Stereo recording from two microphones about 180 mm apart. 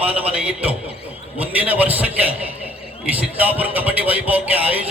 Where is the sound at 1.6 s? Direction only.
10° right (ahead or behind).